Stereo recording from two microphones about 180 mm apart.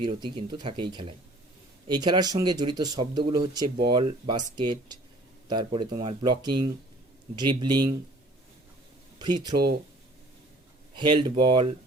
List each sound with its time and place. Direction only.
0.0 s speech: 25° right (ahead or behind)
9.1 s speech: 25° right (ahead or behind)
10.9 s speech: 25° right (ahead or behind)